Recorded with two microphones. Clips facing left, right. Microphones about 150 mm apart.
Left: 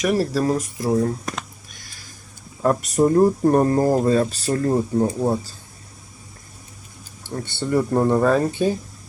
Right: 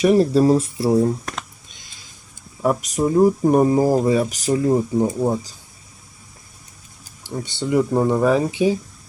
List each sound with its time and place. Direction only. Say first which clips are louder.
0.0 s speech: right 6 dB; 25° right (ahead or behind)
0.9 s speech: right 3 dB; 15° right (ahead or behind)
1.2 s a sound: left 1 dB; 5° left (ahead or behind)
1.7 s a sound: left 2 dB; 20° right (ahead or behind)
3.0 s speech: even; 5° right (ahead or behind)
7.3 s speech: right 2 dB; 15° right (ahead or behind)